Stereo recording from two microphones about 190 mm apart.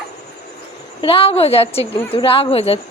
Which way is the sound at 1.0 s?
30° left (ahead or behind).